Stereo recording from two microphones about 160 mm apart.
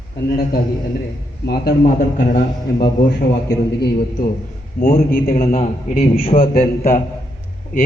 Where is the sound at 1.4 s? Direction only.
85° left.